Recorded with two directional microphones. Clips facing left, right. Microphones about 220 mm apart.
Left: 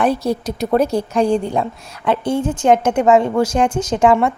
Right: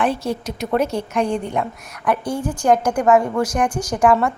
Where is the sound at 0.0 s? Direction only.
35° left (ahead or behind).